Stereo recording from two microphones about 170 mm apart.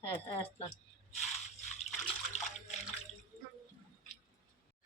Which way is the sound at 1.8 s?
40° left (ahead or behind).